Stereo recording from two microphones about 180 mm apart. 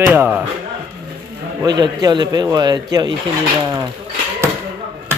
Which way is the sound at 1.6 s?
25° right (ahead or behind).